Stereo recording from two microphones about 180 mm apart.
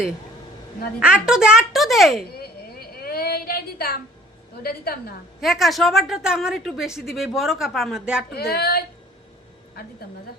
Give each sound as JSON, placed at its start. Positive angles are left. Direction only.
{"t": 1.0, "sound": "a woman's voice", "side_deg": -5}
{"t": 2.3, "sound": "a sound", "side_deg": 60}
{"t": 4.6, "sound": "a woman's voice", "side_deg": 60}
{"t": 5.4, "sound": "a woman's voice", "side_deg": 0}
{"t": 8.3, "sound": "a woman's voice", "side_deg": 60}